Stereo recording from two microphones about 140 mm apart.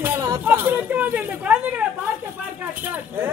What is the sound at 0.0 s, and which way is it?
Speech, 20° right (ahead or behind).